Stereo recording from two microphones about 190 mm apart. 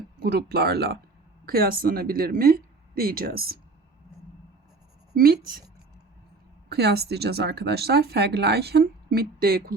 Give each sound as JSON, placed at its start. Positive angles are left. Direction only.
{"t": 0.2, "sound": "speech", "side_deg": -55}
{"t": 5.1, "sound": "a woman's voice", "side_deg": -55}
{"t": 6.7, "sound": "speech", "side_deg": -60}